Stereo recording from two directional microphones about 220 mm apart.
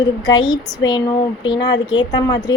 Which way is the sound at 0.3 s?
20° left (ahead or behind).